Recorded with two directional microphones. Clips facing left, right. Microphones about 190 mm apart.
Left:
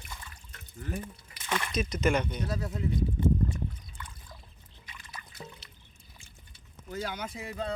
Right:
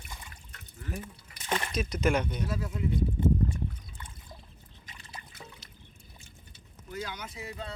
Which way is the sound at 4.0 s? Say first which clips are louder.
Even; 25° right (ahead or behind).